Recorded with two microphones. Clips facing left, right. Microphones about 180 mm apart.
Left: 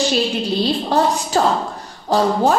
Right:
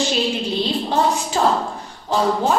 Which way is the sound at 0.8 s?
40° left (ahead or behind).